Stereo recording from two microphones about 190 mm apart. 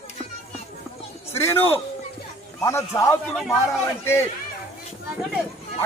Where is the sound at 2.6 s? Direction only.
15° left (ahead or behind).